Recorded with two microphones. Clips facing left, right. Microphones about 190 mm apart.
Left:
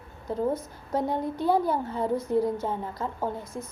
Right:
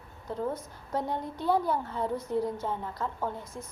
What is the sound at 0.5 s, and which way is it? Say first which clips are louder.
A woman's voice: left 4 dB; 10° left (ahead or behind).